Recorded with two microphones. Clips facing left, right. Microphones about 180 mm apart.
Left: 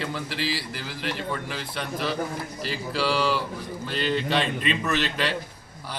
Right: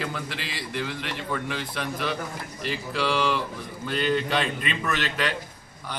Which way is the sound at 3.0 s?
Centre (ahead or behind).